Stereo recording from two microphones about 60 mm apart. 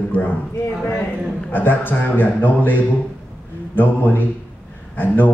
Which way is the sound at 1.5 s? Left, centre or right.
Left.